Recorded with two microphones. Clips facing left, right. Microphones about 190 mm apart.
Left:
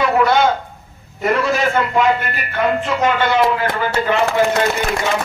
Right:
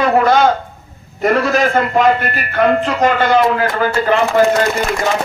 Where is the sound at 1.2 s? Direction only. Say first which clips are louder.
Right 3 dB; 45° right (ahead or behind).